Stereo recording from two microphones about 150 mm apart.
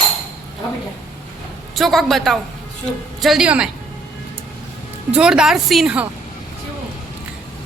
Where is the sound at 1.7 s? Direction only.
Centre (ahead or behind).